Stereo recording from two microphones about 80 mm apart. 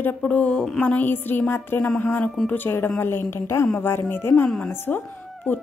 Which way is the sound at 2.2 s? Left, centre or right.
Centre.